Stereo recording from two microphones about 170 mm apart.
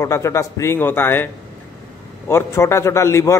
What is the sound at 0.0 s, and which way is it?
A man's voice, 15° left (ahead or behind).